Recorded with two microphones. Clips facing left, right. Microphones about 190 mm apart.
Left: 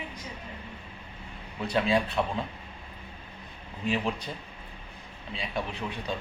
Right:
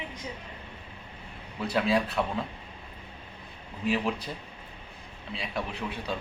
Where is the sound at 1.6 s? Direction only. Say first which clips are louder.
Even; 5° right (ahead or behind).